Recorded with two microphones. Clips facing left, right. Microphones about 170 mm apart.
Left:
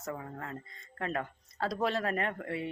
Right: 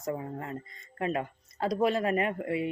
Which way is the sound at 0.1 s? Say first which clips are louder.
Right 5 dB; 25° right (ahead or behind).